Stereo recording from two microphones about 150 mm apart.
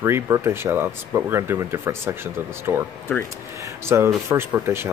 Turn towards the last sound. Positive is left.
turn(degrees=-15)  # may be behind; listen again after turning